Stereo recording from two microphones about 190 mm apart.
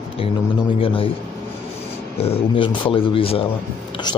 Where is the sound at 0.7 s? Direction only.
30° left (ahead or behind).